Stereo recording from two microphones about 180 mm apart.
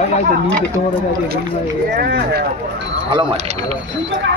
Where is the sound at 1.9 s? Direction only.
60° right (ahead or behind).